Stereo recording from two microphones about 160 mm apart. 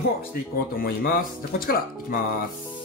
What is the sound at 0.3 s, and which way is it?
Speech, 70° left (ahead or behind).